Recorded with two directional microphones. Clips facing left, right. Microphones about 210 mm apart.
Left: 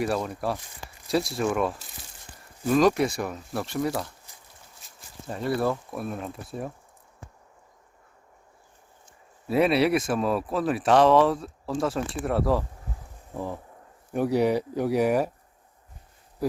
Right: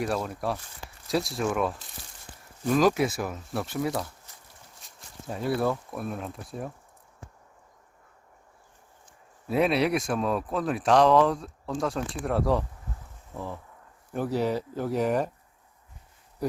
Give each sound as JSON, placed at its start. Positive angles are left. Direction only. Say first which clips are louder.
{"t": 0.0, "sound": "speech", "louder": "left 2 dB", "side_deg": 0}
{"t": 9.5, "sound": "speech", "louder": "left 3 dB", "side_deg": 0}
{"t": 13.3, "sound": "speech", "louder": "left 4 dB", "side_deg": 15}